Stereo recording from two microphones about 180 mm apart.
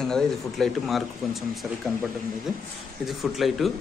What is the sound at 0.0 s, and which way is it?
Speech, centre (ahead or behind).